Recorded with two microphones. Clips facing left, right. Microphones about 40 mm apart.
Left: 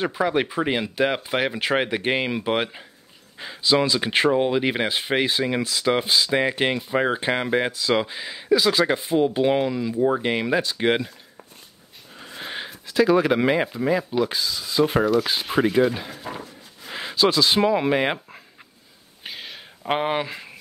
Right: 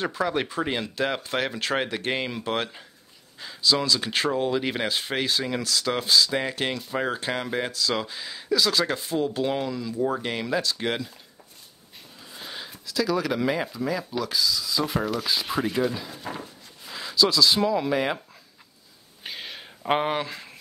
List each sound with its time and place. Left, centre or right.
0.0 s speech: centre
12.2 s speech: left
15.5 s speech: left
15.9 s speech: left
19.2 s a sound: centre